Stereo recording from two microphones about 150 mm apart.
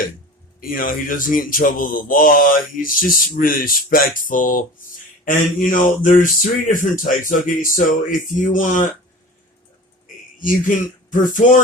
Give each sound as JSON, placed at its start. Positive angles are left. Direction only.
{"t": 0.6, "sound": "speech", "side_deg": 70}
{"t": 10.4, "sound": "speech", "side_deg": 65}